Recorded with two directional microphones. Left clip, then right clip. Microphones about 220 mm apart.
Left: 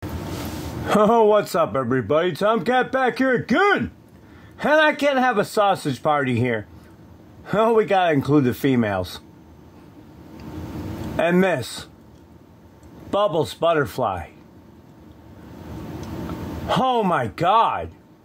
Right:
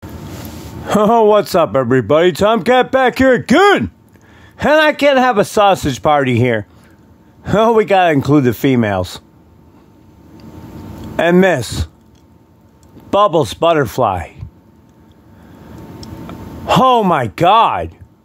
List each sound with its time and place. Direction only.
0.8 s speech: 10° right (ahead or behind)
11.1 s speech: 15° right (ahead or behind)
13.1 s speech: 20° right (ahead or behind)
16.6 s speech: 25° right (ahead or behind)